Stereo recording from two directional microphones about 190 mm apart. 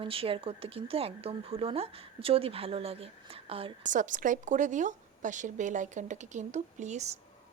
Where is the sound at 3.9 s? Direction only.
40° right (ahead or behind).